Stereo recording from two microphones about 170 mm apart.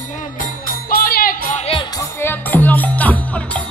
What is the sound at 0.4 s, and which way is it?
Music, 60° left (ahead or behind).